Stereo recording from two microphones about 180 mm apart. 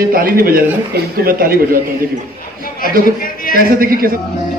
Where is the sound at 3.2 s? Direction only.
50° left (ahead or behind).